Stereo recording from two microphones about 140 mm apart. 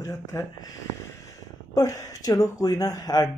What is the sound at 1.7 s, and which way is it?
A man's voice, 25° left (ahead or behind).